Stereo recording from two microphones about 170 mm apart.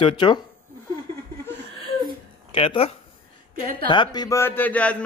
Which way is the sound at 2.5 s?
35° left (ahead or behind).